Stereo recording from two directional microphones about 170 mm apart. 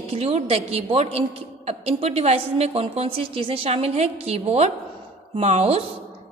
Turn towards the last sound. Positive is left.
turn(degrees=-35)  # may be behind; listen again after turning